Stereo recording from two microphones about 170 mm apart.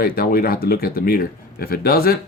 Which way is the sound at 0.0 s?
60° left (ahead or behind).